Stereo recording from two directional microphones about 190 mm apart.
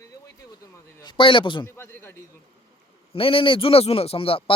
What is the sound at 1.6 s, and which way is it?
Speech, 15° left (ahead or behind).